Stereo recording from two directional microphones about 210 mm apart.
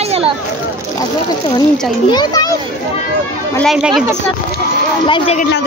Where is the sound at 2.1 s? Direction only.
20° left (ahead or behind).